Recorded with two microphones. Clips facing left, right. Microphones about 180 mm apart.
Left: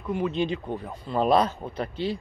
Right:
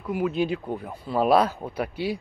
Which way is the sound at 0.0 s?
5° right (ahead or behind).